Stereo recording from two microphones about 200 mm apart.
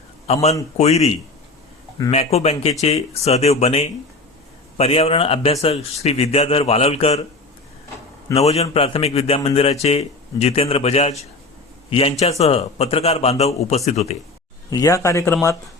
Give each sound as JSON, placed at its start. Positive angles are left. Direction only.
{"t": 0.3, "sound": "a man's voice", "side_deg": 30}
{"t": 8.3, "sound": "a man's voice", "side_deg": 30}
{"t": 14.7, "sound": "speech", "side_deg": 15}